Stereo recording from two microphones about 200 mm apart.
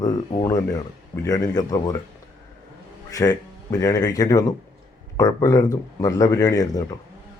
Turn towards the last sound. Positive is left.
turn(degrees=20)  # may be behind; listen again after turning